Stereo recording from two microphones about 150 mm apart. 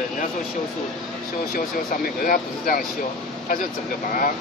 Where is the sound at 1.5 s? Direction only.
70° left (ahead or behind).